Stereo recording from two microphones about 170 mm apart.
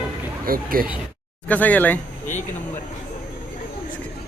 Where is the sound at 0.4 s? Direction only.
60° right (ahead or behind).